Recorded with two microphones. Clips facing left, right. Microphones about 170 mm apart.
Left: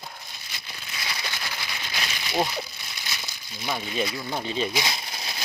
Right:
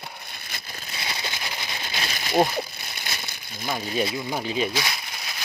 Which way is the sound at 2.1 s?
45° right (ahead or behind).